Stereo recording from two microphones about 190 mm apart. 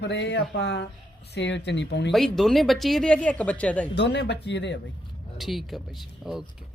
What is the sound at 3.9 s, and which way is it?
Speech, 65° left (ahead or behind).